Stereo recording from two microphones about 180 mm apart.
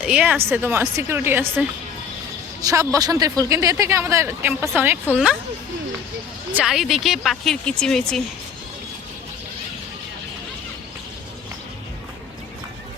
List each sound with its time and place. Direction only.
0.0 s speech: 5° right (ahead or behind)
6.6 s speech: centre (ahead or behind)